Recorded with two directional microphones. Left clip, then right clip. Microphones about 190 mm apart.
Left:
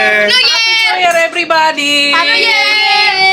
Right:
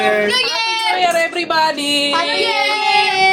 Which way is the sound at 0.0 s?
10° right (ahead or behind).